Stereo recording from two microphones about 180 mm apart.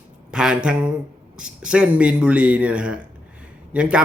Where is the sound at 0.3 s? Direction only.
5° right (ahead or behind).